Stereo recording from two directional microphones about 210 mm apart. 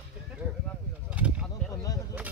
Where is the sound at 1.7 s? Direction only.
15° left (ahead or behind).